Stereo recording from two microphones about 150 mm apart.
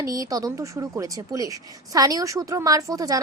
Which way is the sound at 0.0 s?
25° right (ahead or behind).